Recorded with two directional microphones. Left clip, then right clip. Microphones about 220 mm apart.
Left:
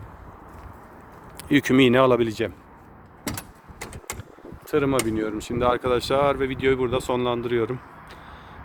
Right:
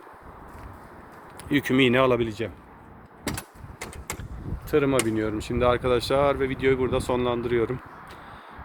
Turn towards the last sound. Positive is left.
turn(degrees=5)  # may be behind; listen again after turning